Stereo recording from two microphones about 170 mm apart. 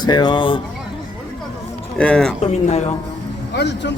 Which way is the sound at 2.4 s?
40° left (ahead or behind).